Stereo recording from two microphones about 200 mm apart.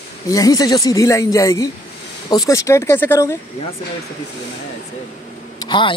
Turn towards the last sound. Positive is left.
turn(degrees=25)  # may be behind; listen again after turning